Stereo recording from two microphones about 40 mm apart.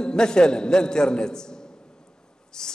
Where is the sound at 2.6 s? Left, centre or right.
Centre.